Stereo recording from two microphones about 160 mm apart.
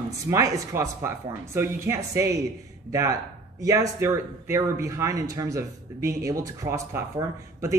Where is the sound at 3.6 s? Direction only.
20° right (ahead or behind).